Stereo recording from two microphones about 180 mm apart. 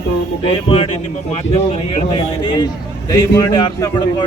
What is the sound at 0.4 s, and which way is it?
Speech, 30° left (ahead or behind).